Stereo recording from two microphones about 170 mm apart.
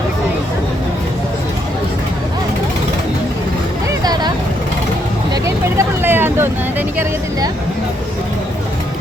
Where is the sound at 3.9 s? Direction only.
25° right (ahead or behind).